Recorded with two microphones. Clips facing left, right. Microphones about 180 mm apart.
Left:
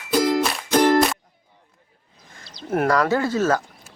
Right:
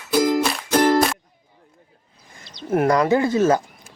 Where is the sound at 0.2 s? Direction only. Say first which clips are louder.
Right 2 dB; 5° right (ahead or behind).